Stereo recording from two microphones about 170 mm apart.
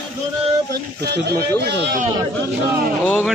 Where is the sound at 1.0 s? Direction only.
70° right (ahead or behind).